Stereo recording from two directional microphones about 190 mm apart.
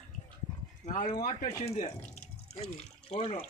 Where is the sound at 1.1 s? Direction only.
25° left (ahead or behind).